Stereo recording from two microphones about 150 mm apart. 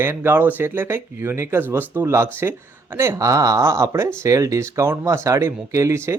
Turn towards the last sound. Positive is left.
turn(degrees=-20)  # may be behind; listen again after turning